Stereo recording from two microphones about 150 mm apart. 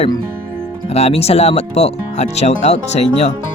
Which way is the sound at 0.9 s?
45° left (ahead or behind).